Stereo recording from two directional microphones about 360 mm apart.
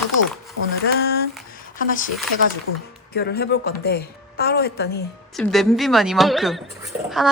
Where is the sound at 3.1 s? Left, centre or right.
Left.